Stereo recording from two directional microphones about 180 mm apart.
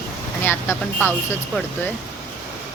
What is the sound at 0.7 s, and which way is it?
Speech, 10° left (ahead or behind).